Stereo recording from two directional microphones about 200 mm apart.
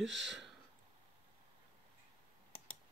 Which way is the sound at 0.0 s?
Centre (ahead or behind).